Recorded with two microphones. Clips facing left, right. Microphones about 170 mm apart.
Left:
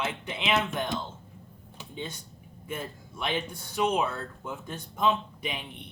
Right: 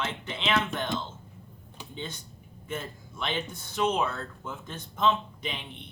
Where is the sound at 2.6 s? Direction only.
10° left (ahead or behind).